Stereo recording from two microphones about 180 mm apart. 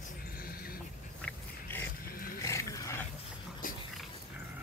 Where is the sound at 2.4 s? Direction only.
15° left (ahead or behind).